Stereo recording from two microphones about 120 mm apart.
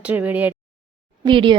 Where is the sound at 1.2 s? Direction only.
40° right (ahead or behind).